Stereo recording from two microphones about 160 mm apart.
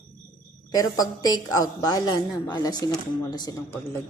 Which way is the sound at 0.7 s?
25° left (ahead or behind).